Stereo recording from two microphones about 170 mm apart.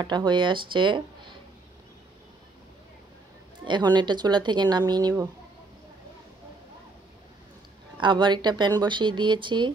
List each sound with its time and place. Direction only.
0.0 s speech: 25° right (ahead or behind)
3.6 s speech: 25° right (ahead or behind)
8.0 s speech: 30° right (ahead or behind)